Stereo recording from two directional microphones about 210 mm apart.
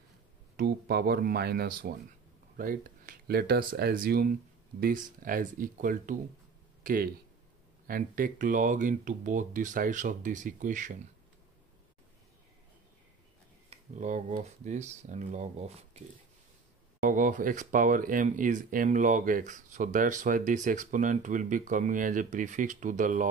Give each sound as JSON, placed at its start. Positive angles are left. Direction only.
{"t": 0.6, "sound": "speech", "side_deg": -50}
{"t": 6.8, "sound": "a sound", "side_deg": -40}
{"t": 7.8, "sound": "speech", "side_deg": -40}
{"t": 13.7, "sound": "speech", "side_deg": -35}
{"t": 17.0, "sound": "speech", "side_deg": -40}